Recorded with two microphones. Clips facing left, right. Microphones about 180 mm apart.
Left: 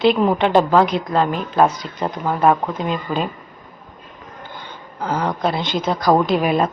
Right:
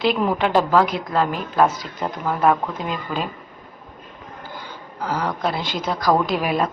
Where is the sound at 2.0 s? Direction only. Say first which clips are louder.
Left 2 dB; 20° left (ahead or behind).